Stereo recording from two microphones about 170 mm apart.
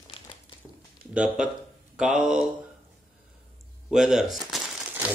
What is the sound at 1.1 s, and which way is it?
Speech, 5° right (ahead or behind).